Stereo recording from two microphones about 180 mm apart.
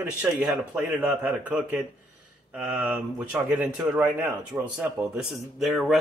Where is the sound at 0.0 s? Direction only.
5° right (ahead or behind).